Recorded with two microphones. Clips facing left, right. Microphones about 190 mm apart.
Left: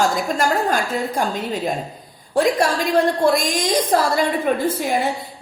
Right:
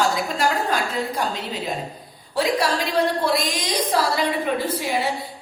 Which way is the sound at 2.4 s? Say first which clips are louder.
Left 4 dB; 50° left (ahead or behind).